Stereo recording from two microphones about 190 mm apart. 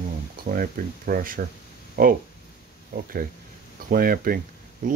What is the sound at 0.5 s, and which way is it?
Speech, 45° right (ahead or behind).